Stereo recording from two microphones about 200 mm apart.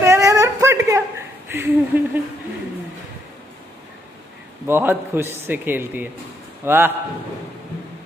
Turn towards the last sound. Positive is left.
turn(degrees=-10)  # may be behind; listen again after turning